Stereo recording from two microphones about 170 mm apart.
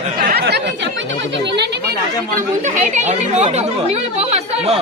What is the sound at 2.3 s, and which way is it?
Speech, 50° right (ahead or behind).